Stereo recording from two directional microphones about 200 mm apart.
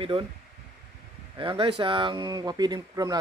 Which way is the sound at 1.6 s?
25° right (ahead or behind).